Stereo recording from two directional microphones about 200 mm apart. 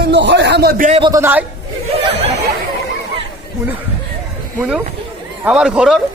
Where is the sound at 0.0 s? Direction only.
60° right (ahead or behind).